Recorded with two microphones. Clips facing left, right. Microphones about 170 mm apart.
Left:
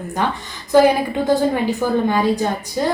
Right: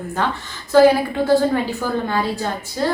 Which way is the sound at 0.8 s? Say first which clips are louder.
Right 2 dB; 15° left (ahead or behind).